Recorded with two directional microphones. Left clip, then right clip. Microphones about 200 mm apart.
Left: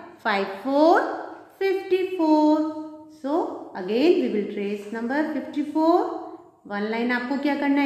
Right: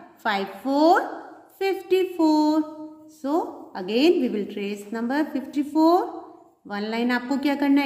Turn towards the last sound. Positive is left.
turn(degrees=-45)  # may be behind; listen again after turning